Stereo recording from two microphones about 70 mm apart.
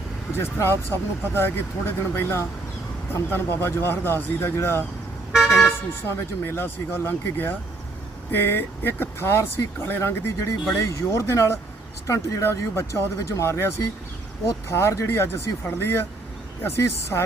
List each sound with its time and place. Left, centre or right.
0.3 s speech: left
5.3 s vehicle: centre
6.4 s speech: left